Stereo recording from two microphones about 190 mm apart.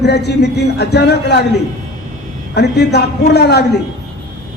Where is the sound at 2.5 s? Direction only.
60° left (ahead or behind).